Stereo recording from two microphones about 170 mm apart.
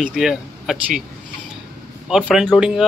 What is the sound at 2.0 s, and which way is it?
Speech, 5° right (ahead or behind).